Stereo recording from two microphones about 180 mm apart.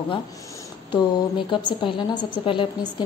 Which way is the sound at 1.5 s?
25° left (ahead or behind).